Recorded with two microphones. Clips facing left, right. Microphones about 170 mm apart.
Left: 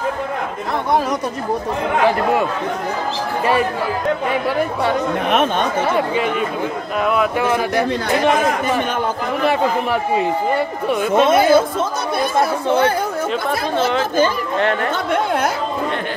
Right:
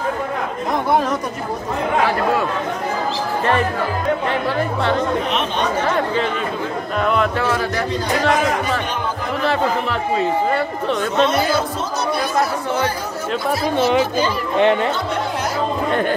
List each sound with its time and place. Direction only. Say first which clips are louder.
5.3 s speech: left 4 dB; 50° left (ahead or behind)
7.1 s a man's voice: left 2 dB; 10° left (ahead or behind)
9.4 s a man's voice: left 1 dB; 15° left (ahead or behind)
11.2 s speech: left 6 dB; 50° left (ahead or behind)
14.6 s speech: right 4 dB; 20° right (ahead or behind)